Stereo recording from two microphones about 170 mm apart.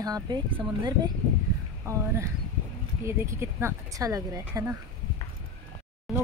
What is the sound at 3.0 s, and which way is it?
Speech, 15° right (ahead or behind).